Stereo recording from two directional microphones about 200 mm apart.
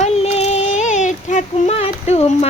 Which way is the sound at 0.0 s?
30° left (ahead or behind).